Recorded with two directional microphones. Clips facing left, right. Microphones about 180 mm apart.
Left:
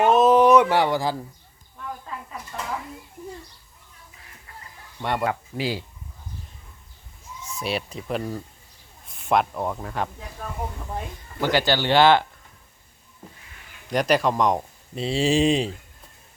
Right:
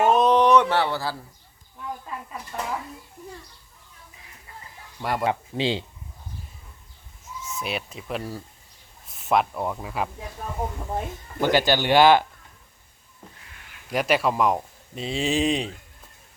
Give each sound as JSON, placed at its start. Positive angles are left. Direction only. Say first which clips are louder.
{"t": 0.0, "sound": "a sound", "louder": "left 2 dB", "side_deg": 0}
{"t": 4.9, "sound": "speech", "louder": "left 1 dB", "side_deg": 0}
{"t": 5.2, "sound": "speech", "louder": "right 1 dB", "side_deg": -25}
{"t": 7.5, "sound": "speech", "louder": "left 3 dB", "side_deg": 0}
{"t": 11.3, "sound": "speech", "louder": "right 1 dB", "side_deg": -15}
{"t": 13.9, "sound": "speech", "louder": "left 2 dB", "side_deg": -5}